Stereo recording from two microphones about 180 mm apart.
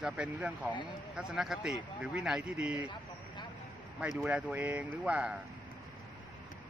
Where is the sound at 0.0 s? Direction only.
10° right (ahead or behind).